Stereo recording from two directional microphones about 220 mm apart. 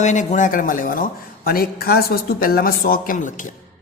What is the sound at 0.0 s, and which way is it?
Speech, 35° left (ahead or behind).